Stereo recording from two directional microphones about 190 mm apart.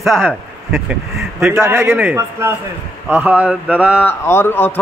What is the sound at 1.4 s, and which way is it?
A man's voice, 10° right (ahead or behind).